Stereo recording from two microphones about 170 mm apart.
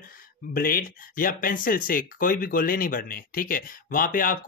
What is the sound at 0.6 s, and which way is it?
Speech, 60° left (ahead or behind).